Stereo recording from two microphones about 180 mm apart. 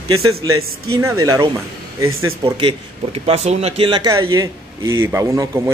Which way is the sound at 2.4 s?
30° right (ahead or behind).